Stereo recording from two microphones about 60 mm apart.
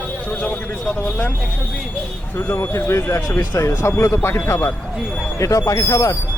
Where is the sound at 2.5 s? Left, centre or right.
Left.